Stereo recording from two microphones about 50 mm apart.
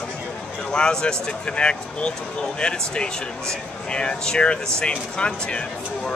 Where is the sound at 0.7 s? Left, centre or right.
Centre.